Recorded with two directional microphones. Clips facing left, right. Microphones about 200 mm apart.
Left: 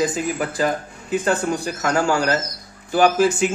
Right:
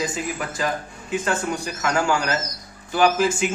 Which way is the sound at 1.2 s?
35° left (ahead or behind).